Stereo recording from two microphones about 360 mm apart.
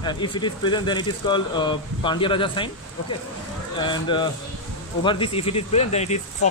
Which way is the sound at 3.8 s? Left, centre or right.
Centre.